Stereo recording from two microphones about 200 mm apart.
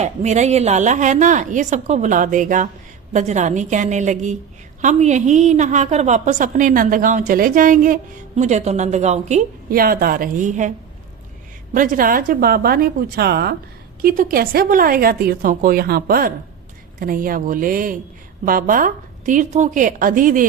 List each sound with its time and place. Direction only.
0.0 s a woman's voice: 35° right (ahead or behind)
11.7 s a woman's voice: 40° right (ahead or behind)